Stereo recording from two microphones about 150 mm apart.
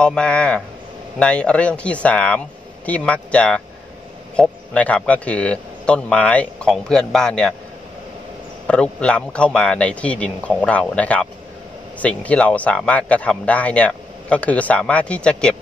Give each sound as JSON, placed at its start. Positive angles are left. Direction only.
{"t": 0.0, "sound": "speech", "side_deg": 5}
{"t": 8.6, "sound": "speech", "side_deg": 5}